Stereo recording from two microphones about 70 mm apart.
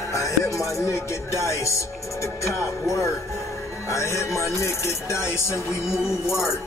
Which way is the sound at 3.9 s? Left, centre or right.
Left.